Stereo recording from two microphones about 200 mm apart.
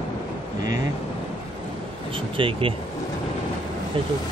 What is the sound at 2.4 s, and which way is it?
Speech, 25° right (ahead or behind).